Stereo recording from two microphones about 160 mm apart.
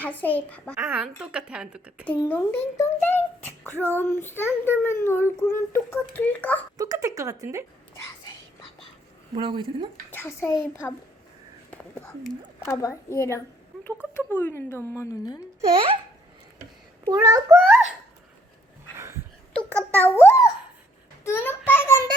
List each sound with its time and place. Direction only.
0.0 s a child's voice: 10° left (ahead or behind)
0.8 s a woman's voice: 10° right (ahead or behind)
2.0 s a child's voice: 10° left (ahead or behind)
6.7 s speech: 20° right (ahead or behind)
9.3 s speech: 30° right (ahead or behind)
10.1 s a child's voice: 15° left (ahead or behind)
17.1 s a child's voice: 20° right (ahead or behind)
18.9 s a sound: 15° right (ahead or behind)
19.5 s a child's voice: 10° left (ahead or behind)